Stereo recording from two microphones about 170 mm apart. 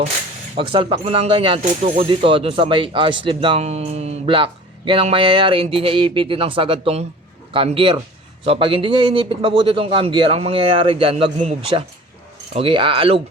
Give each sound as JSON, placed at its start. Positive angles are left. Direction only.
{"t": 0.5, "sound": "speech", "side_deg": -30}
{"t": 12.5, "sound": "speech", "side_deg": -30}